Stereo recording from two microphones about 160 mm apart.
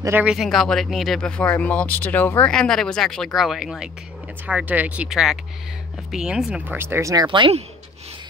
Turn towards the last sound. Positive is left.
turn(degrees=-30)  # may be behind; listen again after turning